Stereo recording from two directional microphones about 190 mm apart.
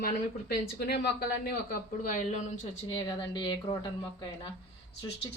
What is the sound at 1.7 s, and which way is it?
Speech, 40° left (ahead or behind).